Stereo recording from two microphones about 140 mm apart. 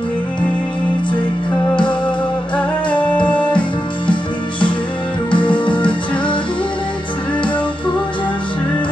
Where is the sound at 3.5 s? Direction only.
35° left (ahead or behind).